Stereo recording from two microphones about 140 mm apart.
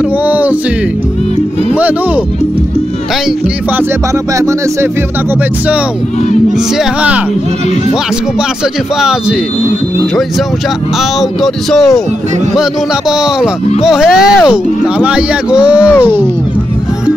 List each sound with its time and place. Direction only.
0.3 s music: 10° right (ahead or behind)
6.8 s speech: 10° right (ahead or behind)
11.1 s speech: centre (ahead or behind)
13.7 s speech: 5° right (ahead or behind)